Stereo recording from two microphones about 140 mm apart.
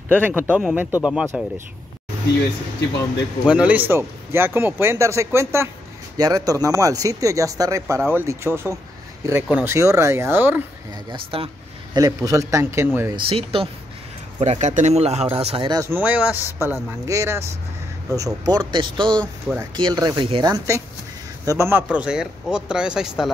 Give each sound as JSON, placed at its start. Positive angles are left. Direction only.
{"t": 0.2, "sound": "speech", "side_deg": -10}
{"t": 3.4, "sound": "speech", "side_deg": -10}
{"t": 11.1, "sound": "a man's voice", "side_deg": -40}
{"t": 12.0, "sound": "speech", "side_deg": -25}
{"t": 13.1, "sound": "speech", "side_deg": -40}
{"t": 14.4, "sound": "speech", "side_deg": -55}
{"t": 15.7, "sound": "speech", "side_deg": -20}
{"t": 21.9, "sound": "speech", "side_deg": -5}